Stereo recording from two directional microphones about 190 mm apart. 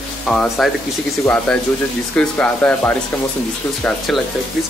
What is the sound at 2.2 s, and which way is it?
Speech, 5° left (ahead or behind).